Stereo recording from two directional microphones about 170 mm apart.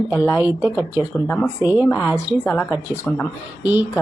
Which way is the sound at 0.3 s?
10° right (ahead or behind).